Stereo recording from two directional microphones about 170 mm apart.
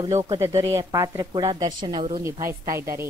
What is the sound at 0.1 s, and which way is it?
Speech, 20° right (ahead or behind).